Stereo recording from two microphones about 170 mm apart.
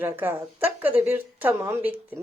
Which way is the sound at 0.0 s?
10° right (ahead or behind).